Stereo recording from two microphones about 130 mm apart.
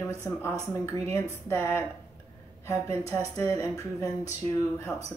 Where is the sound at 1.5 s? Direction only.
20° left (ahead or behind).